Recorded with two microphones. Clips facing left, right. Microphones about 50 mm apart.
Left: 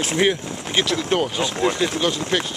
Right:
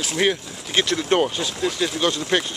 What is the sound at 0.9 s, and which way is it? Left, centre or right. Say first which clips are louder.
Speech: right 3 dB; centre.